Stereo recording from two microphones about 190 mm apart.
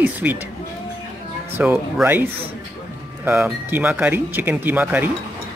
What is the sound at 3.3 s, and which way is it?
Speech, 10° right (ahead or behind).